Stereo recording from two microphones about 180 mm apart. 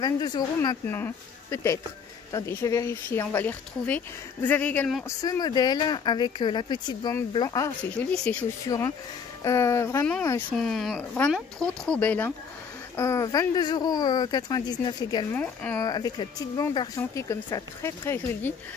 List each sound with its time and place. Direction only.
0.0 s speech: 20° left (ahead or behind); by 5.0 s 5° left (ahead or behind)
5.0 s speech: 20° left (ahead or behind)
8.1 s speech: 5° left (ahead or behind)
8.6 s speech: 20° left (ahead or behind)
15.3 s speech: 10° left (ahead or behind)
15.9 s speech: 20° left (ahead or behind)